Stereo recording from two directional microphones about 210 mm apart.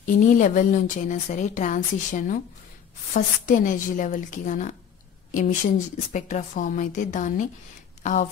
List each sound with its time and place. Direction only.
0.0 s a woman's voice: 40° left (ahead or behind)